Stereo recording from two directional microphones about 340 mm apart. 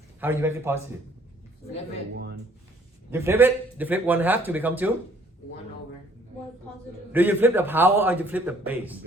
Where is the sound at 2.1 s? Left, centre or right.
Right.